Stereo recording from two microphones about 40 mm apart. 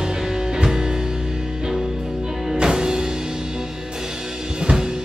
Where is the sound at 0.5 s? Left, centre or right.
Centre.